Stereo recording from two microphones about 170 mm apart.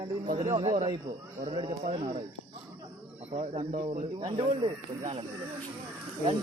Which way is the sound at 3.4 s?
35° right (ahead or behind).